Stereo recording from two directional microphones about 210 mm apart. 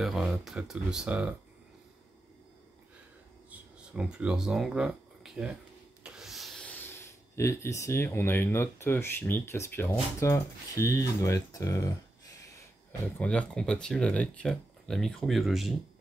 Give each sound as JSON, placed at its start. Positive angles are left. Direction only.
{"t": 0.0, "sound": "speech", "side_deg": 0}
{"t": 3.4, "sound": "a sound", "side_deg": -5}
{"t": 6.0, "sound": "speech", "side_deg": 0}